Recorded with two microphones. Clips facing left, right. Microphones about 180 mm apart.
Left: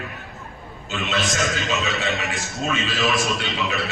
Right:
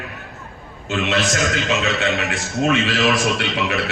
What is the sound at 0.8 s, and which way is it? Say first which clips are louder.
Speech: right 6 dB; 65° right (ahead or behind).